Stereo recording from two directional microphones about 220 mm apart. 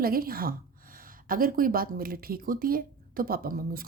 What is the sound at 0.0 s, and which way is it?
Speech, 40° right (ahead or behind).